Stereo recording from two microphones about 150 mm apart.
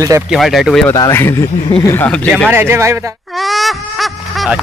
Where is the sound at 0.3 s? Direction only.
Centre (ahead or behind).